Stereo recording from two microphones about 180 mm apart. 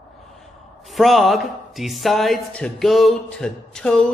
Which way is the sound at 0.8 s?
Centre (ahead or behind).